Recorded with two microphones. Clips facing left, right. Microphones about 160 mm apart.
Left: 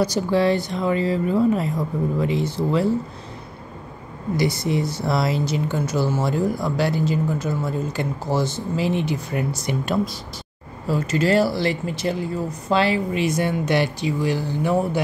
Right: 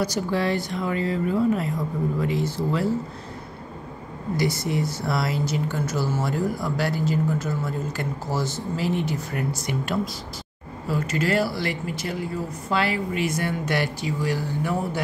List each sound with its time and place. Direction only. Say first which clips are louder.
0.0 s speech: left 5 dB; 25° left (ahead or behind)
4.4 s speech: left 3 dB; 25° left (ahead or behind)